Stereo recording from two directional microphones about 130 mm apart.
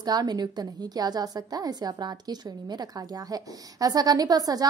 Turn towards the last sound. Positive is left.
turn(degrees=-30)  # may be behind; listen again after turning